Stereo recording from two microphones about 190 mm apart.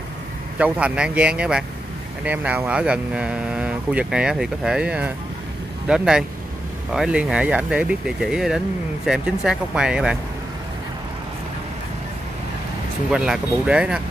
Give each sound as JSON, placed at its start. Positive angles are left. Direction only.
{"t": 0.6, "sound": "speech", "side_deg": -5}
{"t": 13.1, "sound": "speech", "side_deg": -5}